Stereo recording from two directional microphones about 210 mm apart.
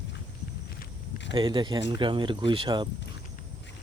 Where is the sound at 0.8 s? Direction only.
55° left (ahead or behind).